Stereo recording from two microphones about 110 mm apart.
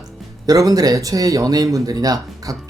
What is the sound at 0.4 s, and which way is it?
Speech, 30° right (ahead or behind).